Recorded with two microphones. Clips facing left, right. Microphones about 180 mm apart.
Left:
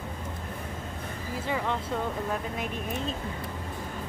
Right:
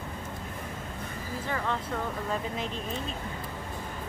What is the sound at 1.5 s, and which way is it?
Speech, 15° left (ahead or behind).